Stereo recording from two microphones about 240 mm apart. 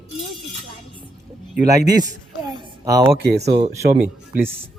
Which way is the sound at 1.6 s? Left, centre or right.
Centre.